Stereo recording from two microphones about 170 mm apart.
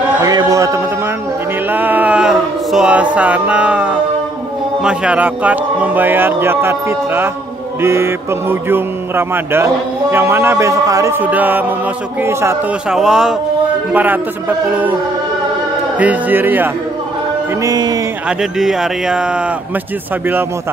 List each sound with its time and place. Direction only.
0.2 s a sound: 20° right (ahead or behind)
4.8 s speech: 5° right (ahead or behind)
12.9 s speech: 5° right (ahead or behind)
16.0 s speech: 10° right (ahead or behind)
17.6 s speech: 25° right (ahead or behind)
18.4 s speech: 5° right (ahead or behind)